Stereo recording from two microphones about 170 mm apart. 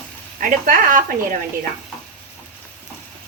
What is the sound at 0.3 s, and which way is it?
Speech, 55° right (ahead or behind).